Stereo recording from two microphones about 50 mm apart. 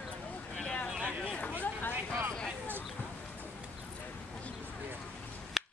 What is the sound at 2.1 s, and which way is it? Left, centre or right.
Speech, right.